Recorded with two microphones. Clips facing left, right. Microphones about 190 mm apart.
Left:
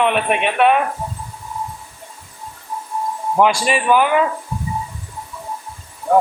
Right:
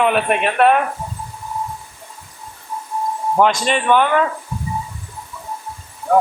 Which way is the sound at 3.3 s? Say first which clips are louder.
Left 1 dB; 5° left (ahead or behind).